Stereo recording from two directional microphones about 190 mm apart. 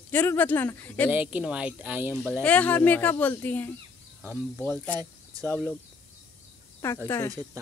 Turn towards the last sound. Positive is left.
turn(degrees=-20)  # may be behind; listen again after turning